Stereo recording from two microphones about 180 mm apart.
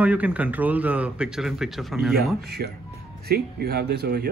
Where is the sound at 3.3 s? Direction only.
60° right (ahead or behind).